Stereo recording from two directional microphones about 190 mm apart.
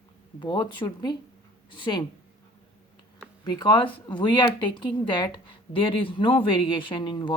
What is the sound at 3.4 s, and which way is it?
A woman's voice, 20° left (ahead or behind).